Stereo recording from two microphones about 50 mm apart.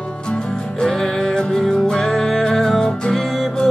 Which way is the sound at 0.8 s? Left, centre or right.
Centre.